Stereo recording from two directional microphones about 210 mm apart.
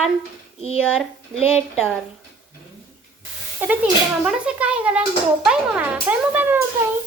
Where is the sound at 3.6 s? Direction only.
10° right (ahead or behind).